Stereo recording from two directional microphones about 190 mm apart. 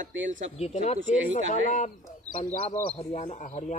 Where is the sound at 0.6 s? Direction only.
35° left (ahead or behind).